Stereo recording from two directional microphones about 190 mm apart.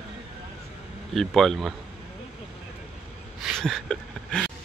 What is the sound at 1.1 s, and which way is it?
Speech, centre (ahead or behind).